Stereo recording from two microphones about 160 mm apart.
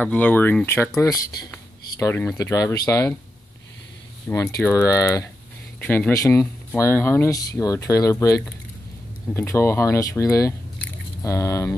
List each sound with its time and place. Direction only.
0.0 s speech: 10° left (ahead or behind)
4.3 s speech: 15° left (ahead or behind)